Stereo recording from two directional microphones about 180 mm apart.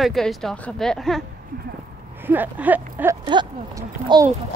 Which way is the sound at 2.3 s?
10° right (ahead or behind).